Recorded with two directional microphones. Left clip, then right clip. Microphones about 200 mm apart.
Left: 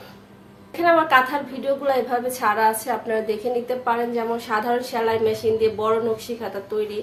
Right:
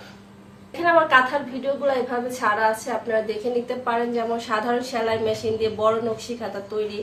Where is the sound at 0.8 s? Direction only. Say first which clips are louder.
Even; 25° left (ahead or behind).